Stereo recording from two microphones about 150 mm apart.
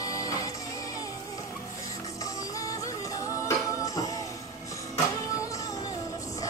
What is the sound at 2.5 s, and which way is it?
Music, 20° left (ahead or behind).